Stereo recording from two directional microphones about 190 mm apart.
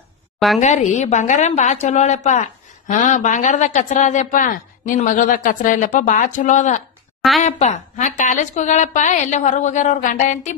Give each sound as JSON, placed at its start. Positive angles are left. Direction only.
{"t": 0.6, "sound": "speech", "side_deg": 40}
{"t": 7.2, "sound": "a woman's voice", "side_deg": 0}
{"t": 7.4, "sound": "speech", "side_deg": 35}